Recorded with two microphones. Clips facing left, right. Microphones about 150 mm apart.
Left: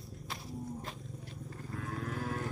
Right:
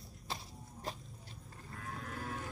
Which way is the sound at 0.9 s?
Centre (ahead or behind).